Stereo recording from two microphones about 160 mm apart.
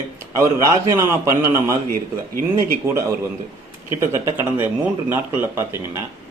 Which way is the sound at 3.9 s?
15° right (ahead or behind).